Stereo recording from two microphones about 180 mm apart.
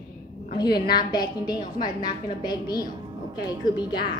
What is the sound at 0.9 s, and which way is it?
A woman's voice, 25° left (ahead or behind).